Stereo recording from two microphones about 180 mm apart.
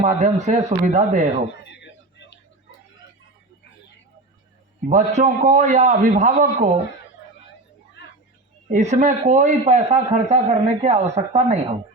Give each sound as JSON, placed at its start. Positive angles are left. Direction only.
{"t": 0.0, "sound": "a man's voice", "side_deg": -40}
{"t": 1.5, "sound": "a sound", "side_deg": 75}
{"t": 4.9, "sound": "a man's voice", "side_deg": -45}
{"t": 8.7, "sound": "speech", "side_deg": -45}